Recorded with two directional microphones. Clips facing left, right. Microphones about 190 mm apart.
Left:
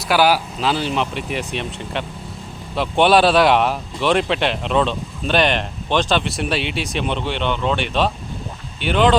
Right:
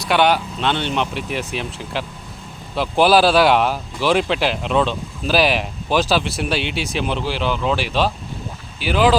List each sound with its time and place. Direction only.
0.1 s speech: 5° left (ahead or behind)